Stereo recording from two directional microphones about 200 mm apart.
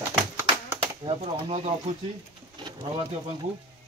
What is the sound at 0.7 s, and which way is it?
Speech, 25° right (ahead or behind).